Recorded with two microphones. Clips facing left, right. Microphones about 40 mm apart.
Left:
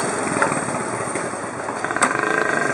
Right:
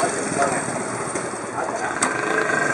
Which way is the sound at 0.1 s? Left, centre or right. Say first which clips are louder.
Left 1 dB; centre.